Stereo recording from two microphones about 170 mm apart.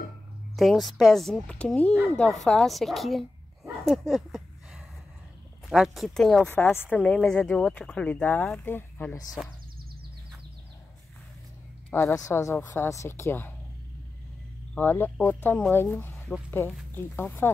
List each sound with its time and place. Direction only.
0.6 s speech: centre (ahead or behind)
3.8 s a sound: centre (ahead or behind)
5.7 s speech: centre (ahead or behind); by 9.4 s 15° left (ahead or behind)
11.9 s a woman's voice: 15° left (ahead or behind)
14.7 s speech: 10° left (ahead or behind)